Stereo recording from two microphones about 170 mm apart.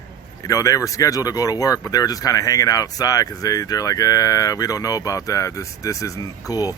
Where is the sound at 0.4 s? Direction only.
20° left (ahead or behind).